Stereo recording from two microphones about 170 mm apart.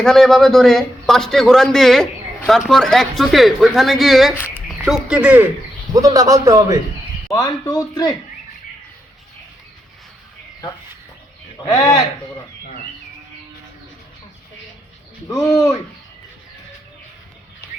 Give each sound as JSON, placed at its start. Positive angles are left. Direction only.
{"t": 0.0, "sound": "a man's voice", "side_deg": 0}
{"t": 5.9, "sound": "a man's voice", "side_deg": -20}
{"t": 7.3, "sound": "speech", "side_deg": 20}
{"t": 11.7, "sound": "speech", "side_deg": 20}
{"t": 15.5, "sound": "speech", "side_deg": 20}